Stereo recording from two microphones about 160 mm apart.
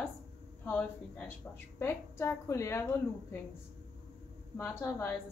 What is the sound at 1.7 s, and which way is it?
A woman's voice, 15° left (ahead or behind).